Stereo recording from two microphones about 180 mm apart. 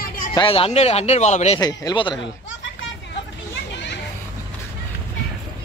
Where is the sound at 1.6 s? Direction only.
20° left (ahead or behind).